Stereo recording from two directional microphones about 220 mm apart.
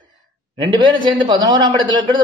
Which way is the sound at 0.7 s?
20° right (ahead or behind).